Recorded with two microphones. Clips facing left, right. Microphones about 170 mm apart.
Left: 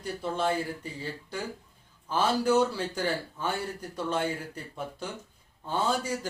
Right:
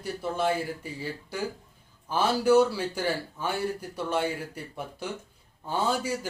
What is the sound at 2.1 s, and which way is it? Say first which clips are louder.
Speech: right 3 dB; 10° right (ahead or behind).